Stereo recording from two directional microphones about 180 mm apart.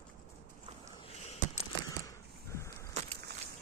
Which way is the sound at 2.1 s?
15° left (ahead or behind).